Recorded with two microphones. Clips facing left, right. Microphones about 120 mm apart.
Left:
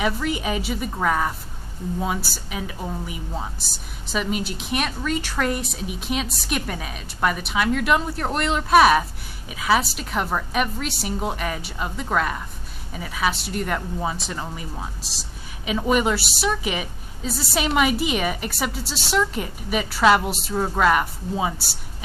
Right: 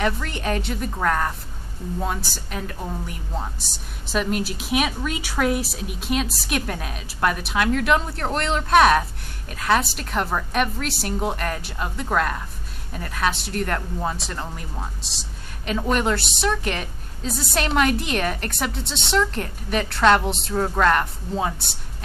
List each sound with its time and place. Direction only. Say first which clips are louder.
0.0 s speech: left 1 dB; 5° left (ahead or behind)